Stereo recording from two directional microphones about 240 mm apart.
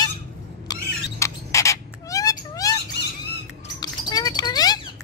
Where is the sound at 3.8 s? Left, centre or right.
Centre.